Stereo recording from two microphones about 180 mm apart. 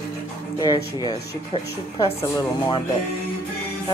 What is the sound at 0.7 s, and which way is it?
Speech, 30° left (ahead or behind).